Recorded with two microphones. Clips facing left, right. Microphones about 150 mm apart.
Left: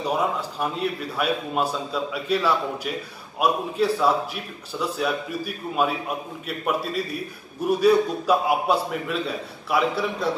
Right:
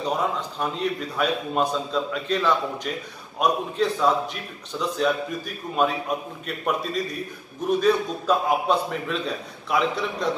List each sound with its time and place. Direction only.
0.0 s a man's voice: 5° left (ahead or behind)